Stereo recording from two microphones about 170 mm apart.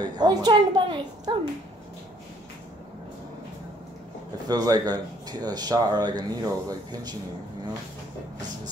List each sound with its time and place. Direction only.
0.0 s speech: 25° right (ahead or behind)
4.5 s speech: 25° right (ahead or behind)